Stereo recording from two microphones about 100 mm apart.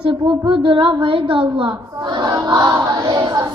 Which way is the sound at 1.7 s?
50° right (ahead or behind).